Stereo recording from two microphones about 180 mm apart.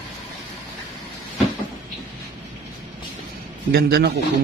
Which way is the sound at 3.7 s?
65° right (ahead or behind).